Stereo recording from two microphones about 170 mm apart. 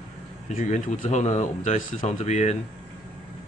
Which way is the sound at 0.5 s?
45° left (ahead or behind).